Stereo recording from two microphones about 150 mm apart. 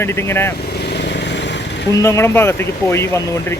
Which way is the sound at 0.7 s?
90° left.